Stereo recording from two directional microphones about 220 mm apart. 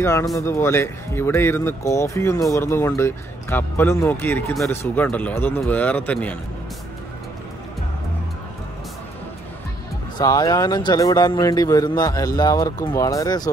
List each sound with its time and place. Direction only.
0.0 s speech: 15° left (ahead or behind)
10.1 s speech: 15° left (ahead or behind)